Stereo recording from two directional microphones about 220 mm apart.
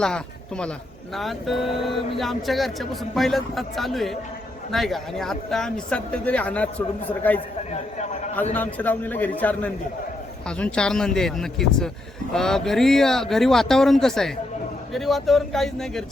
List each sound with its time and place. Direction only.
0.0 s speech: 5° left (ahead or behind)
7.7 s a sound: 30° left (ahead or behind)
8.5 s a man's voice: 10° left (ahead or behind)